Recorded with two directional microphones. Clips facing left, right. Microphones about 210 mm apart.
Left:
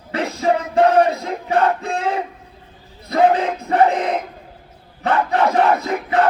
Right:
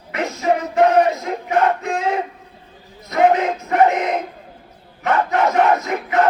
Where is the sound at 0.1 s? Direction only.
30° left (ahead or behind).